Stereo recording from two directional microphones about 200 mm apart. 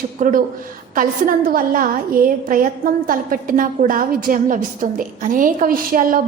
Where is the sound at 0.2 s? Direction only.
40° right (ahead or behind).